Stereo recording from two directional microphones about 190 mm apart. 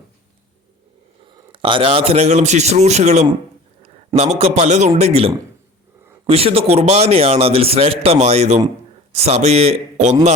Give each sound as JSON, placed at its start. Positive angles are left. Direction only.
{"t": 1.5, "sound": "a man's voice", "side_deg": -25}